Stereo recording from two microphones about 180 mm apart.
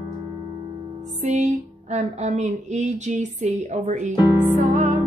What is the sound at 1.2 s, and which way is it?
A woman's voice, 40° right (ahead or behind).